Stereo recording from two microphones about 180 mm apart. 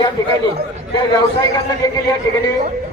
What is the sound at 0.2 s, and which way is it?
Speech, 25° left (ahead or behind).